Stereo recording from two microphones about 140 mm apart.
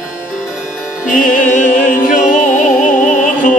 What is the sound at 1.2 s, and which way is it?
Music, 70° left (ahead or behind).